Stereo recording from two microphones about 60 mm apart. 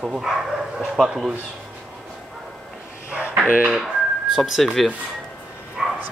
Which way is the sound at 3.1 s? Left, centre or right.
Right.